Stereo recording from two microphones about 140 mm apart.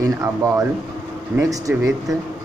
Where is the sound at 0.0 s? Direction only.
20° right (ahead or behind).